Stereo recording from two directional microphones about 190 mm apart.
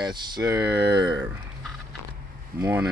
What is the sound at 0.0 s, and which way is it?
Speech, 20° right (ahead or behind).